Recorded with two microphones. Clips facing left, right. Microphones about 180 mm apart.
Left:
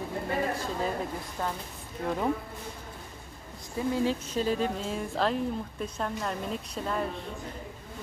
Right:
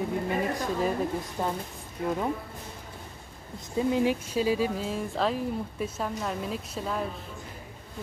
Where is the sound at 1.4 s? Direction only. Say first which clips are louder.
Right 2 dB; 15° right (ahead or behind).